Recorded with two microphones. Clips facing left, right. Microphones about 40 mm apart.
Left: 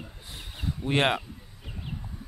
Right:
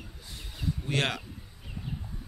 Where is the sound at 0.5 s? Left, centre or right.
Left.